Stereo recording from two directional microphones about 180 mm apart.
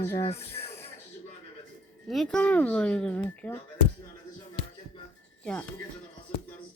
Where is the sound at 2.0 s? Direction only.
5° left (ahead or behind).